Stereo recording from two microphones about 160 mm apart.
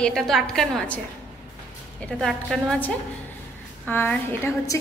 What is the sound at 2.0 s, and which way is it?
A woman's voice, 5° left (ahead or behind).